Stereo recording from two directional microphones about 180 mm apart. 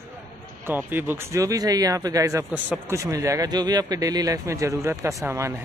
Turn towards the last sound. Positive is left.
turn(degrees=-15)  # may be behind; listen again after turning